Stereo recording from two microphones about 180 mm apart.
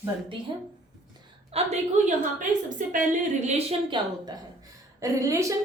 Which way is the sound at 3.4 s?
35° right (ahead or behind).